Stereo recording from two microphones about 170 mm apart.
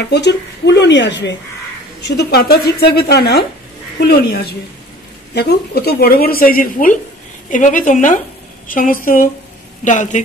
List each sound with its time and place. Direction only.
0.1 s speech: 85° left
2.0 s a woman's voice: 70° left (ahead or behind); by 10.2 s 45° left (ahead or behind)